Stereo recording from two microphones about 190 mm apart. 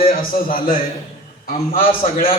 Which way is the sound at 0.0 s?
50° left (ahead or behind).